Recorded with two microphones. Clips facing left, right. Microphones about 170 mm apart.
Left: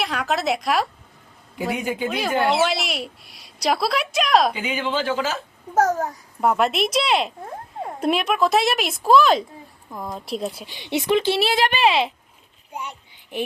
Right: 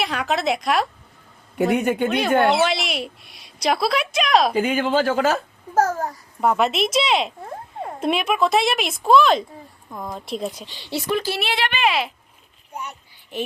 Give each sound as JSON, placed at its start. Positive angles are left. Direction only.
{"t": 0.0, "sound": "a woman's voice", "side_deg": 0}
{"t": 1.8, "sound": "speech", "side_deg": -70}
{"t": 2.0, "sound": "a woman's voice", "side_deg": 0}
{"t": 4.5, "sound": "speech", "side_deg": -50}
{"t": 6.0, "sound": "a woman's voice", "side_deg": 0}
{"t": 10.8, "sound": "speech", "side_deg": 20}
{"t": 11.4, "sound": "speech", "side_deg": 40}
{"t": 13.3, "sound": "speech", "side_deg": 15}